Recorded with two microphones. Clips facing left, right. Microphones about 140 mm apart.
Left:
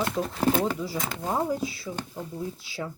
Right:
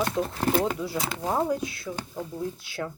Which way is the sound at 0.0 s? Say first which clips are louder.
Left 1 dB; centre (ahead or behind).